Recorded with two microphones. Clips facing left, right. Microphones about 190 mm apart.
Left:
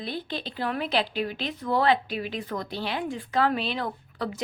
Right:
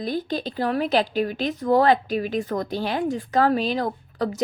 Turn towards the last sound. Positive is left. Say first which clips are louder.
# right 6 dB
turn(degrees=-40)  # may be behind; listen again after turning